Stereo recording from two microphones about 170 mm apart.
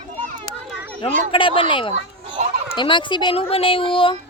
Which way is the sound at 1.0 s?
30° left (ahead or behind).